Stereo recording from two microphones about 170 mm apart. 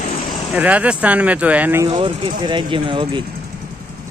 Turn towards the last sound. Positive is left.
turn(degrees=-30)  # may be behind; listen again after turning